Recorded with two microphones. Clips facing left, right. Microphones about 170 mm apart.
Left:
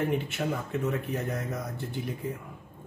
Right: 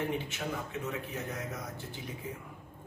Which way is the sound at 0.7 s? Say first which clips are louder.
Left 7 dB; 55° left (ahead or behind).